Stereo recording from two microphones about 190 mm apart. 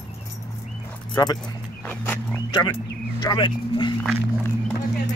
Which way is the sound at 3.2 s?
25° left (ahead or behind).